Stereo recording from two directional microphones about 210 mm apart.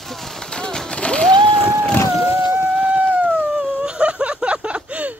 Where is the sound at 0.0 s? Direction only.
Centre (ahead or behind).